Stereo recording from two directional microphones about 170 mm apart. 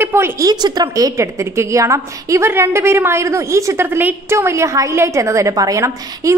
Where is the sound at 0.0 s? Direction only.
15° right (ahead or behind).